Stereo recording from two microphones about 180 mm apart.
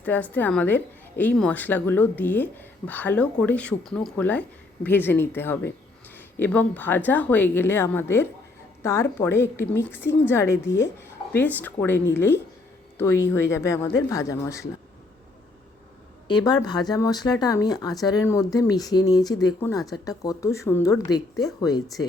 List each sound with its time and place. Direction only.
0.0 s a woman's voice: 10° left (ahead or behind)
16.3 s speech: 20° left (ahead or behind)